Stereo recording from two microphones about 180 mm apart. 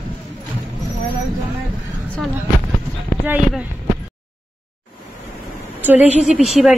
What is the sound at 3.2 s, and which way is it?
Speech, 10° right (ahead or behind).